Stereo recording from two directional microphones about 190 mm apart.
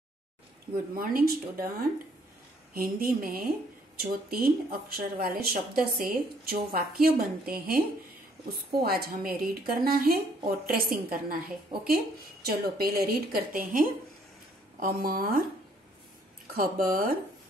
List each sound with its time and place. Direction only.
0.9 s a woman's voice: 50° right (ahead or behind)
16.5 s a woman's voice: 50° right (ahead or behind)